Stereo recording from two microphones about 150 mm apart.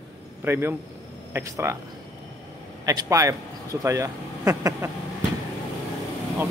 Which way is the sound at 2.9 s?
20° right (ahead or behind).